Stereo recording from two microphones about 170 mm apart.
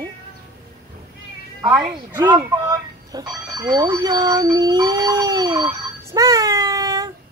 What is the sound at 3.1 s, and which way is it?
Speech, 20° right (ahead or behind).